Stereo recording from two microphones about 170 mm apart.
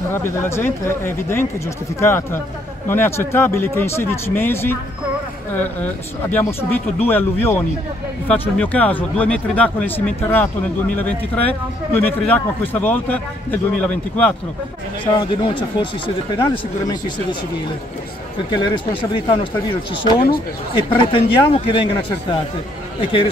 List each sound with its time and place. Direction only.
0.1 s a man's voice: 15° left (ahead or behind)
15.1 s speech: 30° left (ahead or behind)
18.5 s speech: 30° left (ahead or behind)